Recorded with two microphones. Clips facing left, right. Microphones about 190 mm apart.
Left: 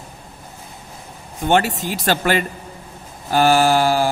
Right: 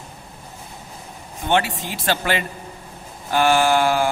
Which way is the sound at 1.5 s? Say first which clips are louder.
Left 3 dB; 40° left (ahead or behind).